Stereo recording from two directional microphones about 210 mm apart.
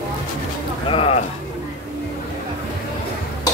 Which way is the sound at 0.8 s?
25° left (ahead or behind).